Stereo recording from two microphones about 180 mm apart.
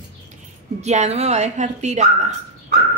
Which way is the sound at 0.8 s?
40° right (ahead or behind).